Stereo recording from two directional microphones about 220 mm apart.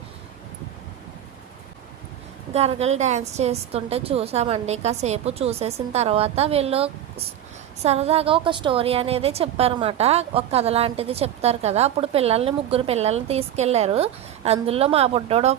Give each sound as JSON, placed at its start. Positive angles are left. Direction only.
{"t": 2.5, "sound": "a woman's voice", "side_deg": -30}